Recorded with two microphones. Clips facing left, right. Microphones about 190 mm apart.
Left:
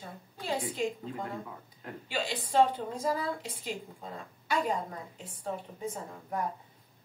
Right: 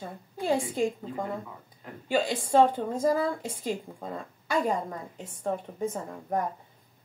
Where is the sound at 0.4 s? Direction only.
45° right (ahead or behind).